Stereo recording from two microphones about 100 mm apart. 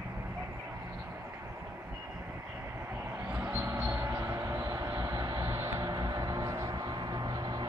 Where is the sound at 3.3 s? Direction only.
20° right (ahead or behind).